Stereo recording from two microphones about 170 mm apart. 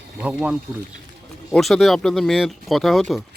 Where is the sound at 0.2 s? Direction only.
5° right (ahead or behind).